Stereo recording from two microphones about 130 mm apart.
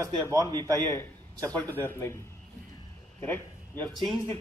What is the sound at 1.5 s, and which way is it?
A man's voice, 15° left (ahead or behind).